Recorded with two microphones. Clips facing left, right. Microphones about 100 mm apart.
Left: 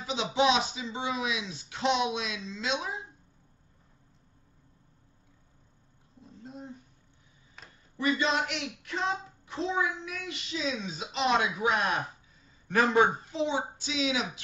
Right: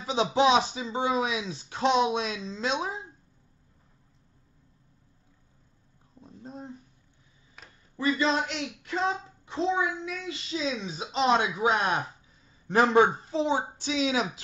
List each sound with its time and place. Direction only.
0.0 s a man's voice: 40° right (ahead or behind)
6.4 s a sound: 35° right (ahead or behind)
8.0 s a man's voice: 30° right (ahead or behind)